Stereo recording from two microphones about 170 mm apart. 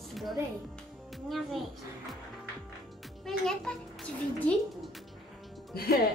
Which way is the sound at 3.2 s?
5° left (ahead or behind).